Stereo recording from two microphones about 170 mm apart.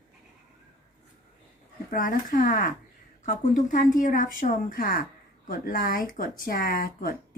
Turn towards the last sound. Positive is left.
turn(degrees=60)  # may be behind; listen again after turning